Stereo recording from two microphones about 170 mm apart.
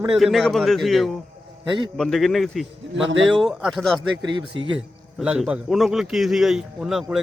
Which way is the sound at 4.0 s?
30° right (ahead or behind).